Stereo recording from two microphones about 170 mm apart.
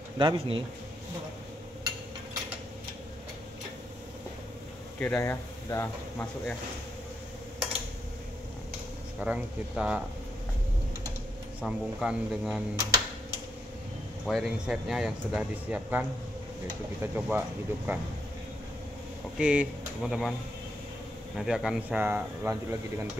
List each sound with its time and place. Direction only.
0.2 s speech: 30° right (ahead or behind)
4.9 s speech: 15° left (ahead or behind)
9.2 s speech: 5° right (ahead or behind)
11.6 s speech: 5° right (ahead or behind)
14.2 s speech: centre (ahead or behind)
19.3 s speech: 5° right (ahead or behind)
21.4 s speech: centre (ahead or behind)